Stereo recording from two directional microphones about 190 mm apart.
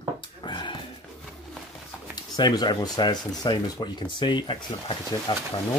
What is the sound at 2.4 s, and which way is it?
Speech, 25° left (ahead or behind).